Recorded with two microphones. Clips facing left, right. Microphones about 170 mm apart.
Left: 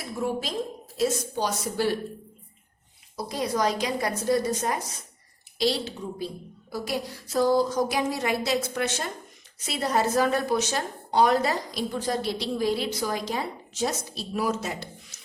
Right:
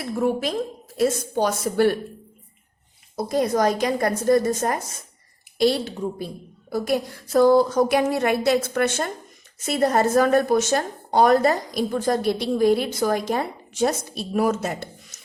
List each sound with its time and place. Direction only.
0.0 s a woman's voice: 55° right (ahead or behind)
3.2 s a woman's voice: 50° right (ahead or behind)